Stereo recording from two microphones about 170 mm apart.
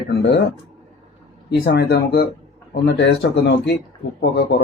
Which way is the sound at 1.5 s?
75° left (ahead or behind).